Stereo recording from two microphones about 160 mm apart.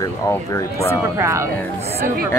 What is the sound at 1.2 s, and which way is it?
Speech, 15° right (ahead or behind).